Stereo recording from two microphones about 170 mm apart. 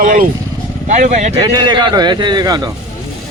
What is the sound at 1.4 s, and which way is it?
Speech, 25° right (ahead or behind).